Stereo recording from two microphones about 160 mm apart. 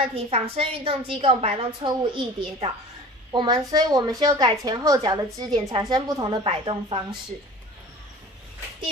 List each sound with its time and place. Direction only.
0.1 s a woman's voice: 35° right (ahead or behind)